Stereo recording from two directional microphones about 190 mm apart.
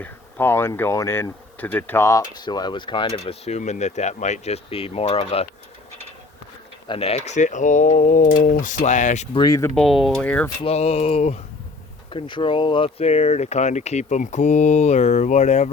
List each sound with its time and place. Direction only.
0.0 s speech: 10° left (ahead or behind); by 5.5 s 30° left (ahead or behind)
6.8 s speech: 30° left (ahead or behind)
9.4 s speech: 15° left (ahead or behind)
9.7 s speech: centre (ahead or behind)
10.6 s speech: 30° left (ahead or behind)